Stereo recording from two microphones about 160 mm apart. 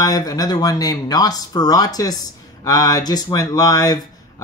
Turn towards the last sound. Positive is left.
turn(degrees=20)  # may be behind; listen again after turning